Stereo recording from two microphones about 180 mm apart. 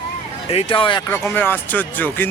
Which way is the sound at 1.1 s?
10° left (ahead or behind).